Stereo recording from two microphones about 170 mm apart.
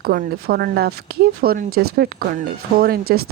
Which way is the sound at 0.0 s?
60° right (ahead or behind).